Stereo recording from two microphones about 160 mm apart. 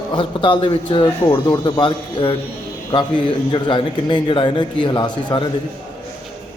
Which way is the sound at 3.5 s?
30° left (ahead or behind).